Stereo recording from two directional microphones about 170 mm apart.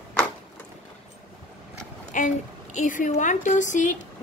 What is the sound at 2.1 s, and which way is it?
A woman's voice, 50° left (ahead or behind).